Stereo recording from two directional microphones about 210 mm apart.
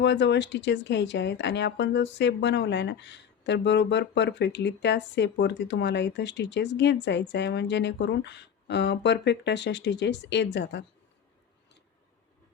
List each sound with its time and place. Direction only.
0.0 s speech: 55° left (ahead or behind)